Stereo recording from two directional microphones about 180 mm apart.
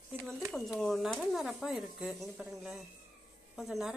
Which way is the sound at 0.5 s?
Centre (ahead or behind).